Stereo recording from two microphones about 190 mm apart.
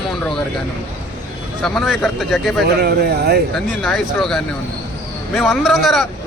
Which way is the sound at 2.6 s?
55° right (ahead or behind).